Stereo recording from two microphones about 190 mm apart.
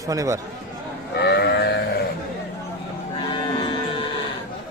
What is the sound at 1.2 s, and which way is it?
Sheep, 60° left (ahead or behind).